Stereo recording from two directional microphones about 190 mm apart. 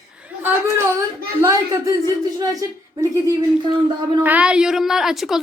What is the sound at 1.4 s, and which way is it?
A woman's voice, 15° right (ahead or behind).